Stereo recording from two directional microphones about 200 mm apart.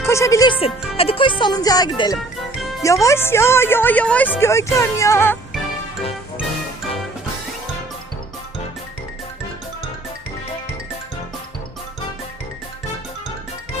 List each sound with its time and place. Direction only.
0.1 s speech: 15° left (ahead or behind)
0.6 s a woman's voice: 30° left (ahead or behind); by 5.4 s 10° left (ahead or behind)